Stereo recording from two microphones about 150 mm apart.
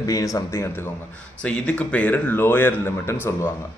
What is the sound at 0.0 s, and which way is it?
A man's voice, 20° left (ahead or behind).